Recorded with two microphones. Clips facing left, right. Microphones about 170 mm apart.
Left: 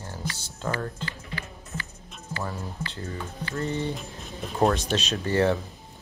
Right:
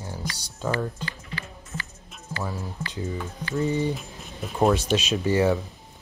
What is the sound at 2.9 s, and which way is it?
Speech, 15° right (ahead or behind).